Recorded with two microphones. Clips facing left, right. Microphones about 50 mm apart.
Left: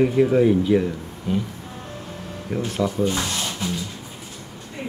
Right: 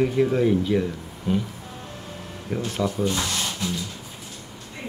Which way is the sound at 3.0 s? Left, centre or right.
Centre.